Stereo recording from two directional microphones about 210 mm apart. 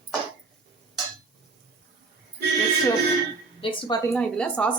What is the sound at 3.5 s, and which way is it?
Speech, 20° left (ahead or behind).